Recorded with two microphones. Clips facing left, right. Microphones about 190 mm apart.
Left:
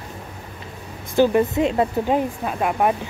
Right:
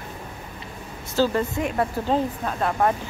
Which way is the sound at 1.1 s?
15° left (ahead or behind).